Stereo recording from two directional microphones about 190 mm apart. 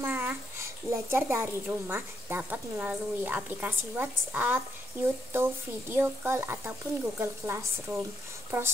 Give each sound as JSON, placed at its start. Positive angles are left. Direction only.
{"t": 0.0, "sound": "a child's voice", "side_deg": -10}